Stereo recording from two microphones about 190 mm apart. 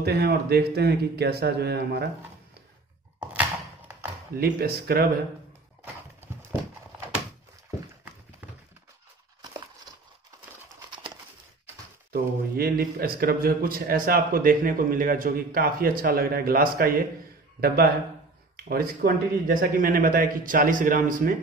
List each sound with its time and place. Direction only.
0.0 s speech: 55° right (ahead or behind)
3.2 s thunk: 10° right (ahead or behind)
4.4 s a man's voice: 55° right (ahead or behind)
10.9 s bird: 25° right (ahead or behind)
12.1 s a man's voice: 50° right (ahead or behind)